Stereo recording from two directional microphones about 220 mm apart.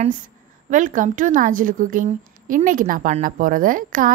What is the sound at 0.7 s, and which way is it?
A woman's voice, 35° right (ahead or behind).